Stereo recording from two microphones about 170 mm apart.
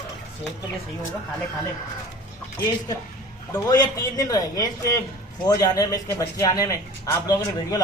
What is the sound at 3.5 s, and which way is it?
A man's voice, 20° left (ahead or behind).